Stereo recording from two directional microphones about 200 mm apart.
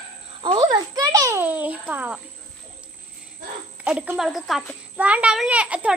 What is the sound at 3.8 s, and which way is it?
A child's voice, 5° right (ahead or behind).